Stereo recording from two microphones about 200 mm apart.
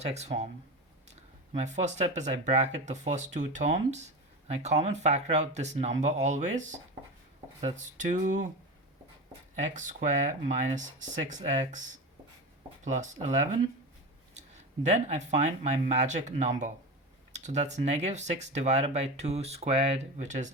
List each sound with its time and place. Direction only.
0.0 s speech: 35° right (ahead or behind)
1.5 s speech: 35° right (ahead or behind)
9.6 s speech: 40° right (ahead or behind)
12.8 s speech: 35° right (ahead or behind)
14.8 s speech: 35° right (ahead or behind)